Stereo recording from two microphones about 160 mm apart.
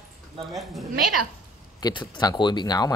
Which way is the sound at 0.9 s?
65° right (ahead or behind).